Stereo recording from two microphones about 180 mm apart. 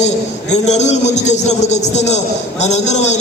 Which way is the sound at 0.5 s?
40° left (ahead or behind).